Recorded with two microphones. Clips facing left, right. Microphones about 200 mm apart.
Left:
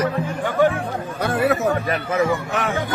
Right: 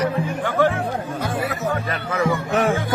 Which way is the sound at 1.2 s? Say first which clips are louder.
Left 7 dB; 65° left (ahead or behind).